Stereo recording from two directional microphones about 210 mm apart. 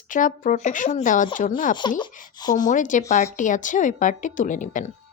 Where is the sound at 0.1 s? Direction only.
40° left (ahead or behind).